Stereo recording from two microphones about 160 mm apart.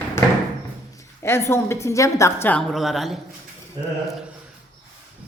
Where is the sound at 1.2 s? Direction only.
15° left (ahead or behind).